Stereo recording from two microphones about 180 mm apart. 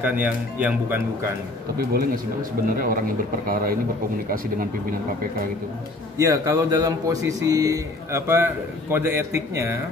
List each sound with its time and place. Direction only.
0.0 s a man's voice: 10° right (ahead or behind)
1.8 s a man's voice: 60° right (ahead or behind)
6.1 s a man's voice: 15° right (ahead or behind)